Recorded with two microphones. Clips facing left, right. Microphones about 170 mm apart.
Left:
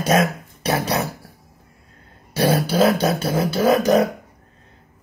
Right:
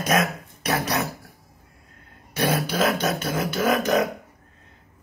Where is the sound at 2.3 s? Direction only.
35° left (ahead or behind).